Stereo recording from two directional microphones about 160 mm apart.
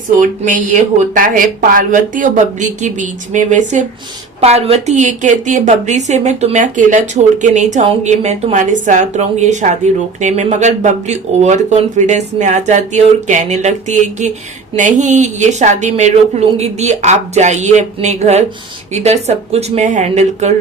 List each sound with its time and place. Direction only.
0.2 s a woman's voice: 55° right (ahead or behind)
4.4 s a woman's voice: 40° right (ahead or behind)